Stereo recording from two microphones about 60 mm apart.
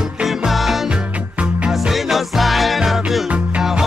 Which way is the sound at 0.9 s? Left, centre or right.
Centre.